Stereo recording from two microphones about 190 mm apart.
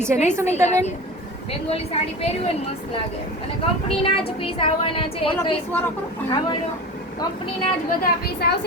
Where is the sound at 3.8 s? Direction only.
30° left (ahead or behind).